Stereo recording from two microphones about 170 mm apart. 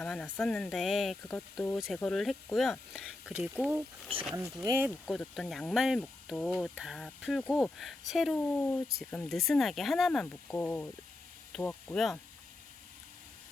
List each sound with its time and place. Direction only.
0.0 s speech: 5° left (ahead or behind)
4.6 s speech: 15° right (ahead or behind)
5.0 s speech: 5° left (ahead or behind)